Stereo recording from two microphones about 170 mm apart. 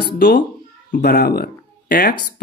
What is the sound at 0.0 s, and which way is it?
Speech, 75° left (ahead or behind).